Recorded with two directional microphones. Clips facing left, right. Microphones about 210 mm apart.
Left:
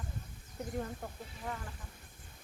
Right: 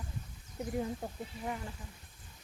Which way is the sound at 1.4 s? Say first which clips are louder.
Right 3 dB; 15° right (ahead or behind).